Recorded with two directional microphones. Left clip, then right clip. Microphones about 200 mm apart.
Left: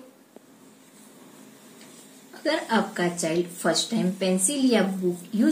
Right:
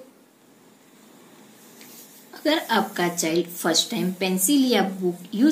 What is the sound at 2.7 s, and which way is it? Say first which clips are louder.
A woman's voice: right 2 dB; 45° right (ahead or behind).